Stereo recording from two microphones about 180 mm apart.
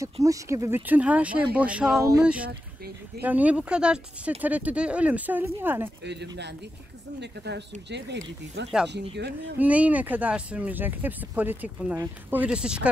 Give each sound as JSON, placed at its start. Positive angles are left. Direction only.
{"t": 0.0, "sound": "speech", "side_deg": -15}
{"t": 6.0, "sound": "speech", "side_deg": -70}
{"t": 9.6, "sound": "speech", "side_deg": -10}